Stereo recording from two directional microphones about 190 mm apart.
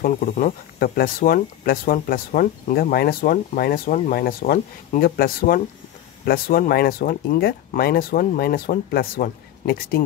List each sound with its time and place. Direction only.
0.0 s speech: 50° left (ahead or behind)